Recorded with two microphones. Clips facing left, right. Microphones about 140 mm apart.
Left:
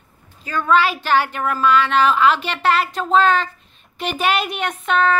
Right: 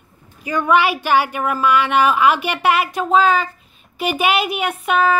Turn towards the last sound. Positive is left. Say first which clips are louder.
# right 1 dB
turn(degrees=-10)  # may be behind; listen again after turning